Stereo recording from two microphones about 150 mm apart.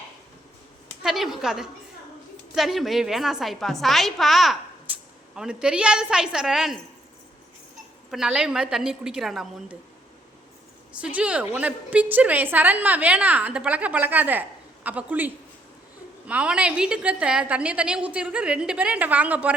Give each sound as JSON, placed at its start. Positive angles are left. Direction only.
{"t": 1.0, "sound": "a woman's voice", "side_deg": 0}
{"t": 8.1, "sound": "a woman's voice", "side_deg": -5}
{"t": 11.0, "sound": "a woman's voice", "side_deg": -10}